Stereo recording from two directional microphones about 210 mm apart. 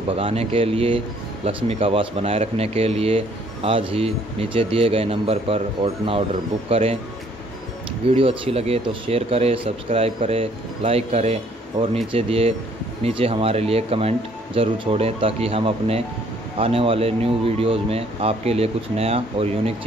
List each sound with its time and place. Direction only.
0.1 s speech: 25° right (ahead or behind)
8.1 s speech: 25° right (ahead or behind)